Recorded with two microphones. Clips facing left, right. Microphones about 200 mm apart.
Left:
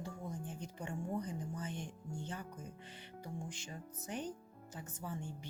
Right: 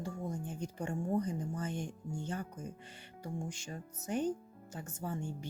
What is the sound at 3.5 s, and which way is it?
A woman's voice, 45° right (ahead or behind).